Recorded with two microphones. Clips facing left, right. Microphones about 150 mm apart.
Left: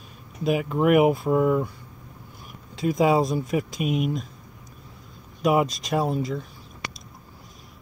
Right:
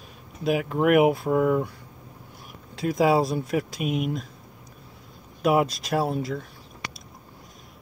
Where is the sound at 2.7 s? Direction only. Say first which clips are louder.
Left 1 dB; centre (ahead or behind).